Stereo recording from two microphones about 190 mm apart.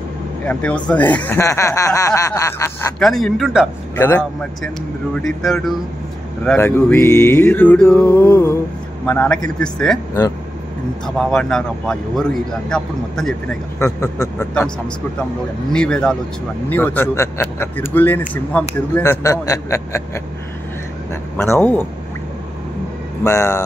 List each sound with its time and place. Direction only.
0.5 s a man's voice: 5° left (ahead or behind)
3.0 s speech: centre (ahead or behind)
3.9 s a man's voice: 10° left (ahead or behind)
11.1 s speech: centre (ahead or behind)
13.7 s a man's voice: 15° left (ahead or behind)
15.7 s a man's voice: 5° left (ahead or behind)
21.4 s a man's voice: 10° left (ahead or behind)
23.2 s a man's voice: 15° left (ahead or behind)